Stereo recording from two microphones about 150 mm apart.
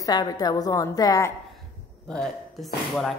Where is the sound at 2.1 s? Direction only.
Centre (ahead or behind).